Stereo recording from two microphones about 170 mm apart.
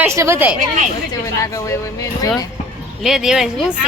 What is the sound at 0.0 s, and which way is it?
Speech, 15° right (ahead or behind).